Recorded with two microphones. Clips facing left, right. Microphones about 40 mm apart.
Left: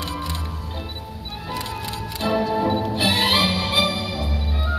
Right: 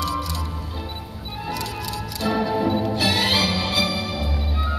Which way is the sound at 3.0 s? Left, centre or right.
Left.